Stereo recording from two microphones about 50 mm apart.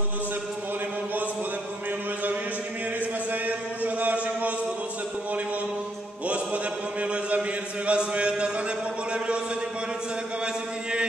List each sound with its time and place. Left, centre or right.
3.3 s music: right
6.2 s chant: right
10.4 s a sound: centre